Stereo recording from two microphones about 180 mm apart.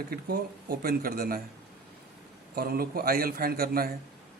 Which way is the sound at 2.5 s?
55° right (ahead or behind).